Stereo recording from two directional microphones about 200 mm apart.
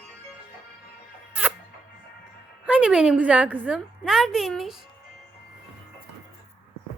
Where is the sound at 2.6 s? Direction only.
5° right (ahead or behind).